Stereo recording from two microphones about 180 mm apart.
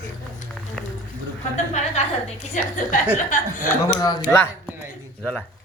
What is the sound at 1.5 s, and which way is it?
A woman's voice, 40° left (ahead or behind).